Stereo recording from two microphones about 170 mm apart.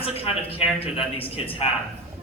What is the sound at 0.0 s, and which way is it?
Speech, 35° left (ahead or behind).